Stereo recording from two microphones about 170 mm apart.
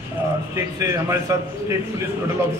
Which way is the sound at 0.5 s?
15° right (ahead or behind).